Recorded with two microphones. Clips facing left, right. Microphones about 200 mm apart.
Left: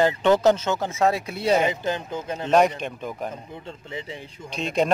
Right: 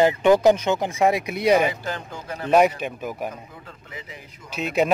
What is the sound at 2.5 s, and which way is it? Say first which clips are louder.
Speech: right 2 dB; 5° right (ahead or behind).